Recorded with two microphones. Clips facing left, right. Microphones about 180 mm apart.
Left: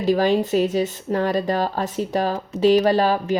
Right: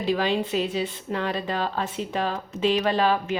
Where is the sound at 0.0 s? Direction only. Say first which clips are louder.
Left 6 dB; 40° left (ahead or behind).